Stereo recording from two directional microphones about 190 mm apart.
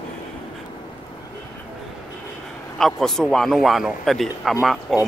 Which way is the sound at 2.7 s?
Centre (ahead or behind).